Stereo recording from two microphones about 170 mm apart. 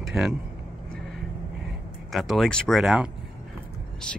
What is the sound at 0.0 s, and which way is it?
Speech, centre (ahead or behind).